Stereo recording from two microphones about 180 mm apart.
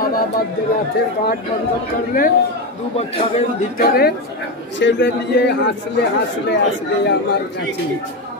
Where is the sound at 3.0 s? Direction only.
35° left (ahead or behind).